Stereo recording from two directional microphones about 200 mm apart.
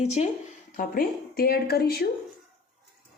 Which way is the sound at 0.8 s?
50° left (ahead or behind).